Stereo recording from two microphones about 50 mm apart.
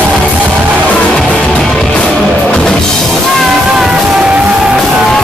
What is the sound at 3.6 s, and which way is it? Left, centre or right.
Music, centre.